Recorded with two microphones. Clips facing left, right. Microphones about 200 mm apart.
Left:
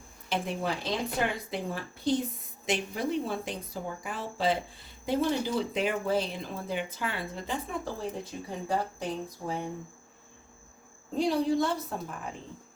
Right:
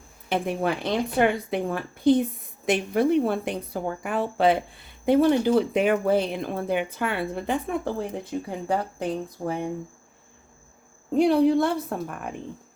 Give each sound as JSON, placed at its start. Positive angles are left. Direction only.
{"t": 0.3, "sound": "a woman's voice", "side_deg": -55}
{"t": 9.4, "sound": "speech", "side_deg": -45}
{"t": 11.1, "sound": "a woman's voice", "side_deg": -60}